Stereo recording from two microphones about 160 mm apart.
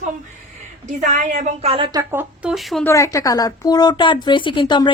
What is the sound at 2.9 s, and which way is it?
Speech, 20° left (ahead or behind).